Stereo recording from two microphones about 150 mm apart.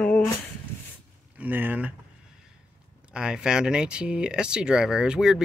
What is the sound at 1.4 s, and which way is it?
Speech, 10° right (ahead or behind).